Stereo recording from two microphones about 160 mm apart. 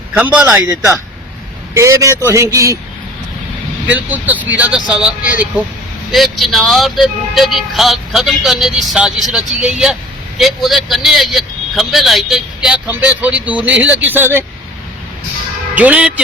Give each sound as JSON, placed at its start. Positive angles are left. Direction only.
{"t": 0.2, "sound": "speech", "side_deg": -5}
{"t": 3.8, "sound": "speech", "side_deg": -10}
{"t": 15.7, "sound": "speech", "side_deg": -10}